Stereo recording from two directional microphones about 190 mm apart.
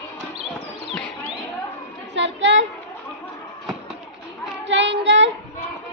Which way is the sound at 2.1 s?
70° right (ahead or behind).